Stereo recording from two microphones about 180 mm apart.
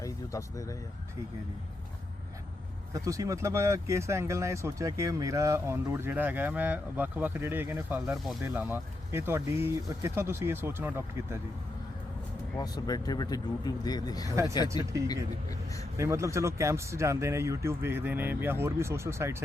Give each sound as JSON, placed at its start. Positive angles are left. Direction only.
{"t": 0.0, "sound": "speech", "side_deg": 20}
{"t": 2.9, "sound": "speech", "side_deg": -20}
{"t": 12.5, "sound": "speech", "side_deg": 20}
{"t": 16.0, "sound": "speech", "side_deg": -15}